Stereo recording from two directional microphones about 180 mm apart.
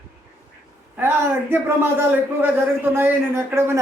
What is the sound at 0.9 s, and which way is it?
A man's voice, 10° right (ahead or behind).